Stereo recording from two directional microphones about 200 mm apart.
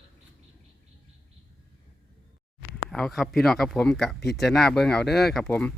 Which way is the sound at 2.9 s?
Centre (ahead or behind).